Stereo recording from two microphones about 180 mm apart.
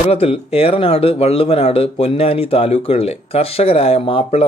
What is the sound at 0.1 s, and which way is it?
Speech, 35° left (ahead or behind).